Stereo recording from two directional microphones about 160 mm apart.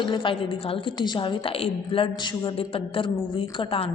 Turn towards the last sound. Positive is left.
turn(degrees=35)  # may be behind; listen again after turning